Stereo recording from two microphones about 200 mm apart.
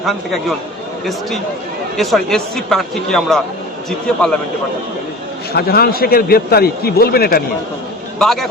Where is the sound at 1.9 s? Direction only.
Centre (ahead or behind).